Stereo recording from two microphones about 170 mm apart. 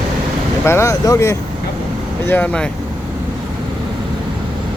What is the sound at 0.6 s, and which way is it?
Speech, 15° left (ahead or behind).